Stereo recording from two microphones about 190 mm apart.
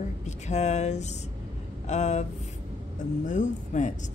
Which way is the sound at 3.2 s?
40° left (ahead or behind).